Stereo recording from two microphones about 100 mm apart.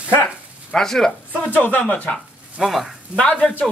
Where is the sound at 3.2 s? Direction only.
10° left (ahead or behind).